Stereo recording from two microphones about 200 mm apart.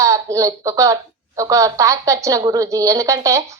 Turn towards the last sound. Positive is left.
turn(degrees=-15)  # may be behind; listen again after turning